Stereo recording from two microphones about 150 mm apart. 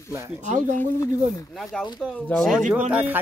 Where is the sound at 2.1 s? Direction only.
5° left (ahead or behind); by 3.2 s 10° right (ahead or behind).